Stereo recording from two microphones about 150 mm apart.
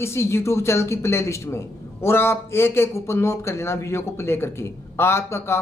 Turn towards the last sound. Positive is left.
turn(degrees=15)  # may be behind; listen again after turning